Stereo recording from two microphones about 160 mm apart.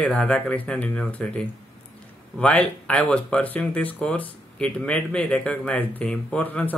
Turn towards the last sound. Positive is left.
turn(degrees=10)  # may be behind; listen again after turning